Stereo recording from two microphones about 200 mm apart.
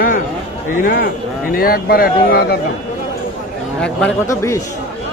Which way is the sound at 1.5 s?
45° left (ahead or behind).